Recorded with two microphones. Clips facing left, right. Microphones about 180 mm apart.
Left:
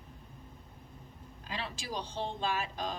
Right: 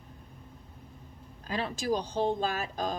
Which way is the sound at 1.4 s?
45° right (ahead or behind).